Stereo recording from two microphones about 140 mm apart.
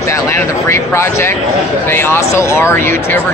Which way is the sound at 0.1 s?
20° left (ahead or behind).